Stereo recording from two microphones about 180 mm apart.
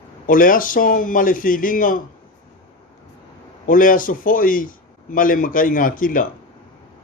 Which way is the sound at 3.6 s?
50° left (ahead or behind).